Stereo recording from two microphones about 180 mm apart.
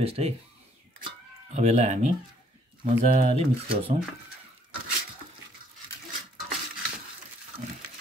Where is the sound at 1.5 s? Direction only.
40° right (ahead or behind).